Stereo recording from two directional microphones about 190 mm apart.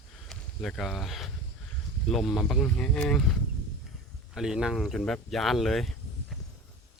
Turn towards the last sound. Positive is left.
turn(degrees=0)  # may be behind; listen again after turning